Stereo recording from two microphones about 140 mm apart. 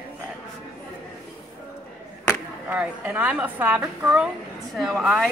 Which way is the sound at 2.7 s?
10° right (ahead or behind).